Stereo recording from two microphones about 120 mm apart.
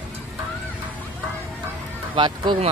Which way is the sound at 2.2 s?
35° right (ahead or behind).